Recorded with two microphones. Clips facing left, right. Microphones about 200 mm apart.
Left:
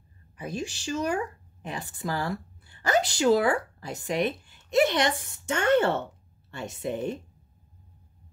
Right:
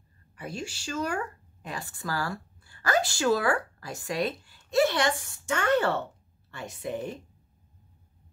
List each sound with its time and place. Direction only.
0.4 s a woman's voice: 20° left (ahead or behind)